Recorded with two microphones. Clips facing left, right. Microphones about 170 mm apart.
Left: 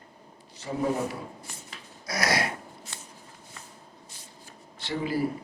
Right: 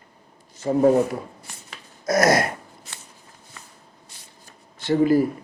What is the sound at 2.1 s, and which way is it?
Gasp, 45° right (ahead or behind).